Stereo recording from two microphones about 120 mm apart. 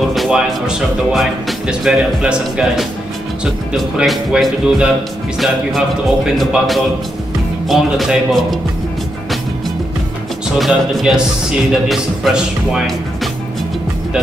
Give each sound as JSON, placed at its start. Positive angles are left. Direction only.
{"t": 0.1, "sound": "speech", "side_deg": 0}
{"t": 10.6, "sound": "speech", "side_deg": 0}